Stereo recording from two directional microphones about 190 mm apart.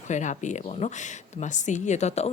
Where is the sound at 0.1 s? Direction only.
40° left (ahead or behind).